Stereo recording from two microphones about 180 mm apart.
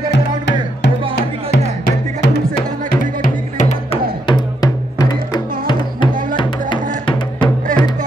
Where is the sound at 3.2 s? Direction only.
45° left (ahead or behind).